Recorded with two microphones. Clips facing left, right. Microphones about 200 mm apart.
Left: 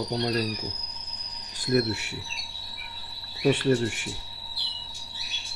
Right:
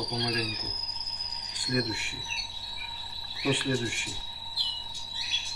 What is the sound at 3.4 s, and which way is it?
Cricket, 45° left (ahead or behind).